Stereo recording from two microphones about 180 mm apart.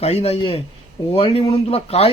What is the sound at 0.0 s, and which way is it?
A man's voice, 35° left (ahead or behind).